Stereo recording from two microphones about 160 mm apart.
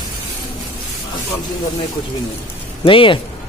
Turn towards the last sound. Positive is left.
turn(degrees=35)  # may be behind; listen again after turning